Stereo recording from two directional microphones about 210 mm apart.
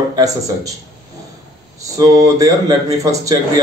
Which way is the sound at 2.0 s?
15° right (ahead or behind).